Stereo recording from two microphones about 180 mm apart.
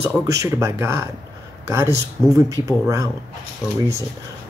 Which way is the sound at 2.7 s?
20° right (ahead or behind).